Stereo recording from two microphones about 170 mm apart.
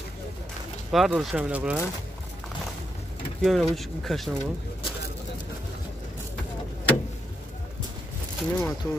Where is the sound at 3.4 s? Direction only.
Centre (ahead or behind).